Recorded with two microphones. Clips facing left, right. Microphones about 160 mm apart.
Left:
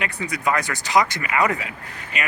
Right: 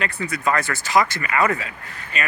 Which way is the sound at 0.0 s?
15° left (ahead or behind).